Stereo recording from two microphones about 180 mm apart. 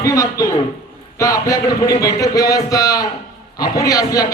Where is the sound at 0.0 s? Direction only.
20° left (ahead or behind).